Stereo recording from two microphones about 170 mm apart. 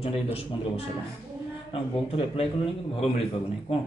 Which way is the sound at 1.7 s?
35° left (ahead or behind).